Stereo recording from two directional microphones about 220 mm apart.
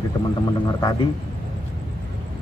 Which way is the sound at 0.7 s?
15° left (ahead or behind).